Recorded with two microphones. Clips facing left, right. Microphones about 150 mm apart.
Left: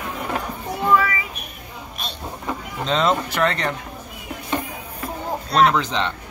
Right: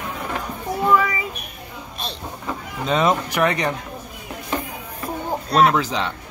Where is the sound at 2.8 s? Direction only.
10° right (ahead or behind).